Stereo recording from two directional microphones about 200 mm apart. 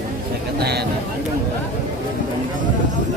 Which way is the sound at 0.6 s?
55° right (ahead or behind).